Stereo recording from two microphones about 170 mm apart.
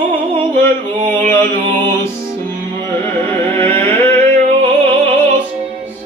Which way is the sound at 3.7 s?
40° right (ahead or behind).